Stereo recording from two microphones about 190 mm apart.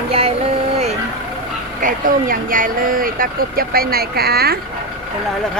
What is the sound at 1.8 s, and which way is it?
Speech, 45° right (ahead or behind).